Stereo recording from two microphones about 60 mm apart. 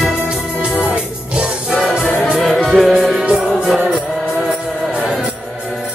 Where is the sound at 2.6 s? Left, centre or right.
Centre.